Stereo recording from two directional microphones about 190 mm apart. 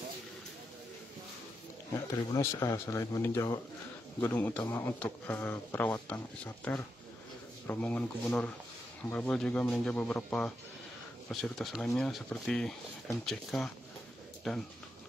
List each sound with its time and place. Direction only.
2.3 s speech: 15° left (ahead or behind); by 14.6 s centre (ahead or behind)